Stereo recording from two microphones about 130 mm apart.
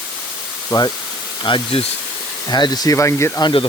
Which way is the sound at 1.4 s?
45° left (ahead or behind).